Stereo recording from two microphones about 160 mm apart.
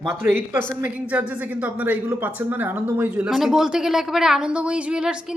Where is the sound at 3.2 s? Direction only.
Centre (ahead or behind).